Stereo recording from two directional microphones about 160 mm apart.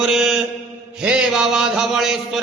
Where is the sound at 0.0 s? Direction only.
5° right (ahead or behind).